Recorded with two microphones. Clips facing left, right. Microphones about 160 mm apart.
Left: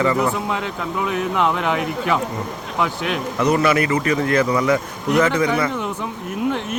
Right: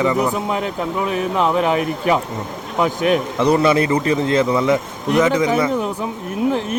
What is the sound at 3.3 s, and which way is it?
Speech, 25° right (ahead or behind).